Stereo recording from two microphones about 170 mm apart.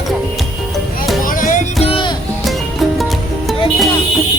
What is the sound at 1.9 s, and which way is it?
Music, 30° left (ahead or behind).